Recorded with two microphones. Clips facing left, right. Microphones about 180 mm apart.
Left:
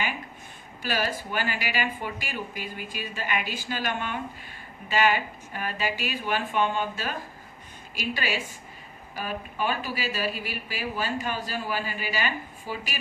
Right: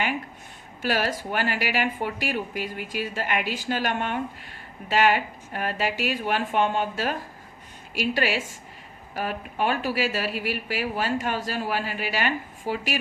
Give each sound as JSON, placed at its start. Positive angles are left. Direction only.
{"t": 0.8, "sound": "a woman's voice", "side_deg": -70}